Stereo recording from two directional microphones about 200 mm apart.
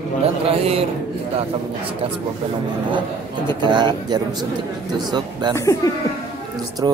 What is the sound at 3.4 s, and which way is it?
A man's voice, 20° right (ahead or behind).